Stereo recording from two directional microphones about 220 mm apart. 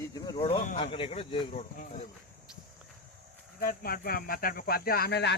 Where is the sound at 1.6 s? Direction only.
35° left (ahead or behind).